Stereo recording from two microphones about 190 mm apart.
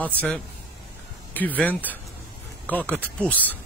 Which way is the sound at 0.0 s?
10° left (ahead or behind).